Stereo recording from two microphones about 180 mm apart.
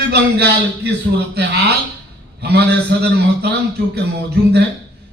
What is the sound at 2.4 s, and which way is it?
A man's voice, 65° right (ahead or behind).